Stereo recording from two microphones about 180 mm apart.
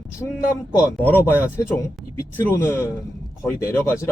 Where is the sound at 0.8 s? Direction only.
10° left (ahead or behind).